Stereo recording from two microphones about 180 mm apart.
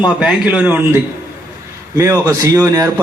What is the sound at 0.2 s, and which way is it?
A man's voice, 5° right (ahead or behind).